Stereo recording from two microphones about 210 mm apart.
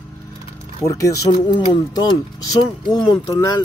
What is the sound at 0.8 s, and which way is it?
Speech, 15° left (ahead or behind).